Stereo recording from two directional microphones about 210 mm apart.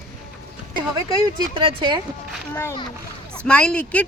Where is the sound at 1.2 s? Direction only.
20° right (ahead or behind).